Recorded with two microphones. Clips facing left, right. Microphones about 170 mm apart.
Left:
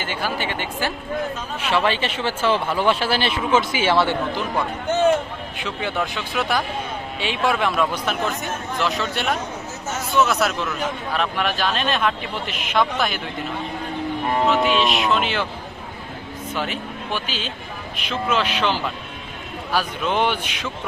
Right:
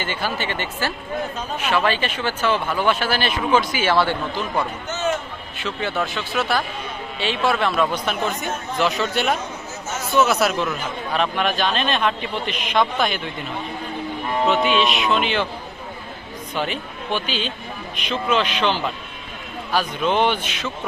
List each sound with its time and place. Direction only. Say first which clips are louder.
0.0 s speech: even; 10° left (ahead or behind)
1.5 s speech: even; 25° left (ahead or behind)
4.9 s a sound: left 10 dB; 55° left (ahead or behind)
5.5 s speech: right 1 dB; 15° left (ahead or behind)
14.4 s speech: right 1 dB; centre (ahead or behind)
16.6 s speech: right 2 dB; 5° left (ahead or behind)